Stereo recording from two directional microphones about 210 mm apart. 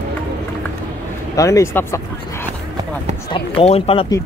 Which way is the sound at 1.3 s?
15° left (ahead or behind).